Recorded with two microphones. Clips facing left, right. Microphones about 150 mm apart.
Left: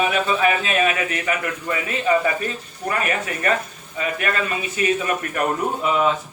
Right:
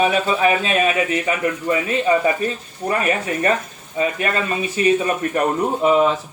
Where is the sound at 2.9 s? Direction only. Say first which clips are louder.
Right 4 dB; 30° right (ahead or behind).